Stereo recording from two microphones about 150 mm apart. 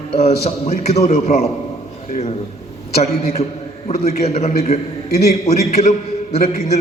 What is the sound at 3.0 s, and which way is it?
A man's voice, 45° left (ahead or behind).